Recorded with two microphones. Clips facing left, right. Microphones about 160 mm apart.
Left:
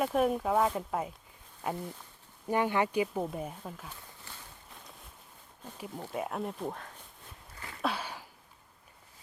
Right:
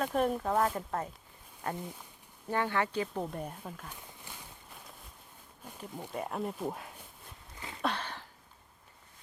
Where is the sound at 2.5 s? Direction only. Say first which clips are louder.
Left 3 dB; 15° left (ahead or behind).